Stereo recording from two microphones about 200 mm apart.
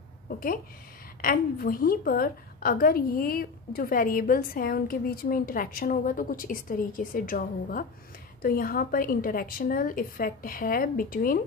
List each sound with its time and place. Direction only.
1.2 s a woman's voice: 45° left (ahead or behind)